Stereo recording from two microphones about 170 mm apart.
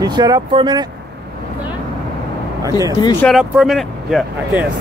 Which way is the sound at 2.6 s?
20° right (ahead or behind).